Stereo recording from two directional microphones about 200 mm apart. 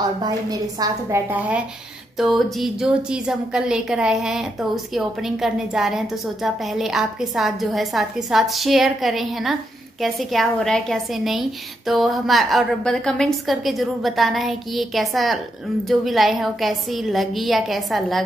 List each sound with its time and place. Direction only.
0.2 s a woman's voice: 20° right (ahead or behind); by 18.2 s centre (ahead or behind)